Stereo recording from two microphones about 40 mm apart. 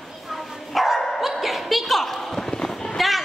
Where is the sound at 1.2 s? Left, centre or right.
Centre.